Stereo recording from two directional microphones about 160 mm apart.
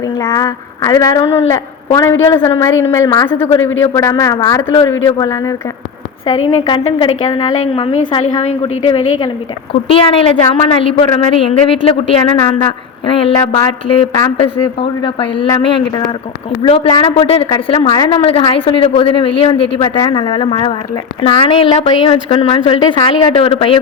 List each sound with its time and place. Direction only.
0.0 s a sound: 20° left (ahead or behind)
1.5 s a man's voice: 20° left (ahead or behind)
13.1 s a woman's voice: 35° left (ahead or behind)